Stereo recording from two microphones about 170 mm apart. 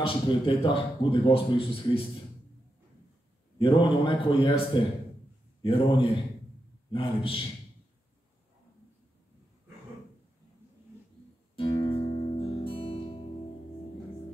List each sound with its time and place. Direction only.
0.0 s speech: 30° left (ahead or behind)
3.5 s a man's voice: 30° left (ahead or behind)
11.5 s music: 30° left (ahead or behind)